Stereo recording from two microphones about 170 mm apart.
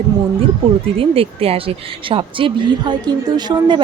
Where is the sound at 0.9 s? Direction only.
35° right (ahead or behind).